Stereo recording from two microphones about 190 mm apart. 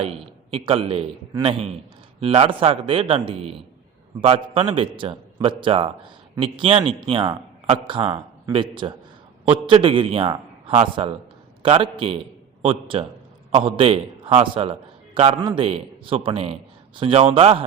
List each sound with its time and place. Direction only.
0.0 s a man's voice: 30° right (ahead or behind)